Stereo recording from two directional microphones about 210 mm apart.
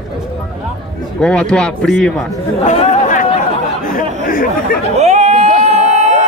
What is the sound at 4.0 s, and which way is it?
Chatter, 40° left (ahead or behind).